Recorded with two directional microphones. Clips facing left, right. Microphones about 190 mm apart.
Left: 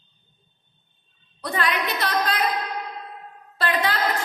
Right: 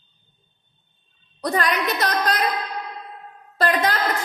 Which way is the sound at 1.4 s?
40° right (ahead or behind).